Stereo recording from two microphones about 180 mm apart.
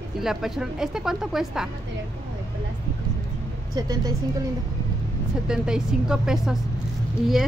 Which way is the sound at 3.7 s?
20° right (ahead or behind).